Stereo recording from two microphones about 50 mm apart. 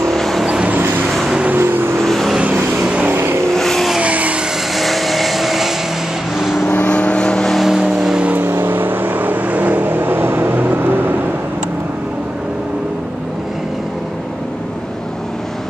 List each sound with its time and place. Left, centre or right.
0.1 s vehicle: centre
0.7 s vehicle: right
2.0 s vehicle: centre
2.7 s vehicle: right
3.1 s vehicle: right
3.4 s vehicle: centre
4.0 s vehicle: right
4.7 s vehicle: centre
6.7 s vehicle: left
7.5 s vehicle: centre
8.4 s vehicle: right